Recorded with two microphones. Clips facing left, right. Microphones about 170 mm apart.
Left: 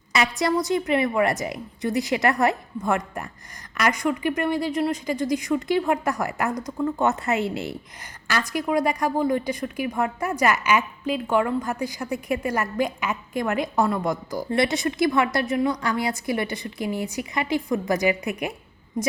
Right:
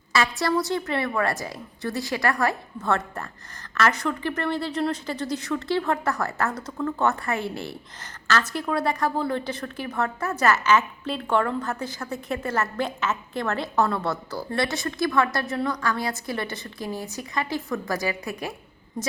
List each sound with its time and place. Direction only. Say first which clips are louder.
0.1 s a woman's voice: left 1 dB; 20° left (ahead or behind)